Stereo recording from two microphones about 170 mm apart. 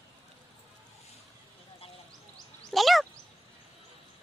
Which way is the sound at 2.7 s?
Centre (ahead or behind).